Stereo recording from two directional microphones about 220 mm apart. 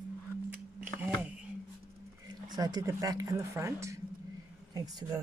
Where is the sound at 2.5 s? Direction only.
15° right (ahead or behind).